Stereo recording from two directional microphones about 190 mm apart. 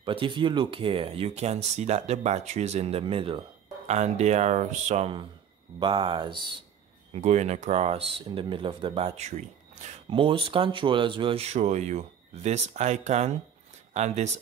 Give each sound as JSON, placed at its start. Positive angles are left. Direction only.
{"t": 0.0, "sound": "speech", "side_deg": -25}
{"t": 7.1, "sound": "speech", "side_deg": -35}